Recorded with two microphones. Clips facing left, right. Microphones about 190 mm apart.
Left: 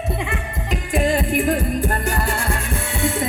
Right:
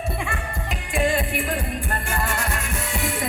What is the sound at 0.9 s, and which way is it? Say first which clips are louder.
Music: left 4 dB; 40° left (ahead or behind).